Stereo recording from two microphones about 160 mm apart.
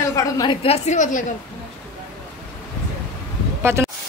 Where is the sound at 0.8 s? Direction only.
50° left (ahead or behind).